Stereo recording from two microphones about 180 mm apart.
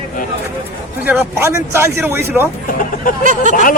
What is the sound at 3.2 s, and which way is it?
Speech, 45° right (ahead or behind).